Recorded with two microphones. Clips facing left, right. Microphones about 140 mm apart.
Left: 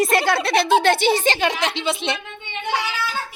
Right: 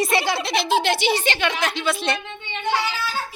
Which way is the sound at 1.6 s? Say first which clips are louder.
Left 1 dB; 25° left (ahead or behind).